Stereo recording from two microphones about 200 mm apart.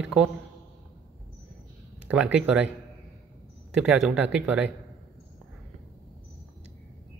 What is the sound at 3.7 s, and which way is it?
Speech, 5° right (ahead or behind).